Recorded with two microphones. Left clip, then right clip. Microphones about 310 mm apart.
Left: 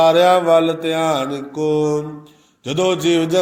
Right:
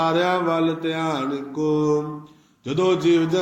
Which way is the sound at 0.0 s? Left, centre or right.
Left.